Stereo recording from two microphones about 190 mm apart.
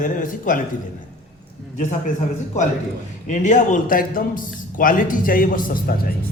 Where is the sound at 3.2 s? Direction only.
40° left (ahead or behind).